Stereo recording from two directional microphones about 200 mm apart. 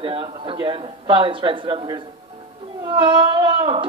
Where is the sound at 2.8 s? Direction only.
25° right (ahead or behind).